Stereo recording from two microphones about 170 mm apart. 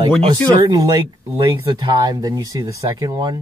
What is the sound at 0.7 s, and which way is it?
Speech, 20° right (ahead or behind).